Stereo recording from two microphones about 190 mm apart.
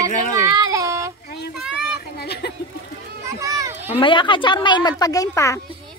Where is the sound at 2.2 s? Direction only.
55° left (ahead or behind).